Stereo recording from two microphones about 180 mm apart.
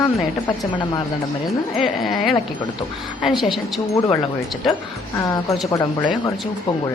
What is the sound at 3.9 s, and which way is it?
Speech, 15° left (ahead or behind).